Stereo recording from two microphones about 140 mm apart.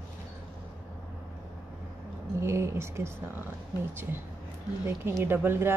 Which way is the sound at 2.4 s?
20° right (ahead or behind).